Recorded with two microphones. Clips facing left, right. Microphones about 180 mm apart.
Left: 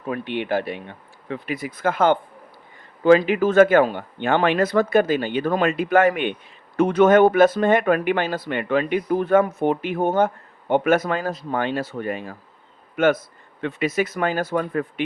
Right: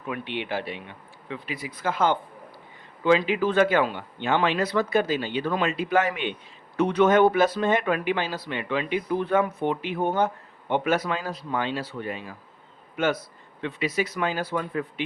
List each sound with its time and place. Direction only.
0.0 s speech: 40° left (ahead or behind)